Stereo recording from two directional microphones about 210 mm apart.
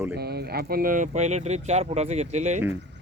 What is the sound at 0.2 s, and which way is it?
Speech, 50° right (ahead or behind).